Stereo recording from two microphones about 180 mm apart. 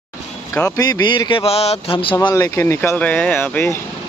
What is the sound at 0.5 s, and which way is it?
A man's voice, 20° left (ahead or behind).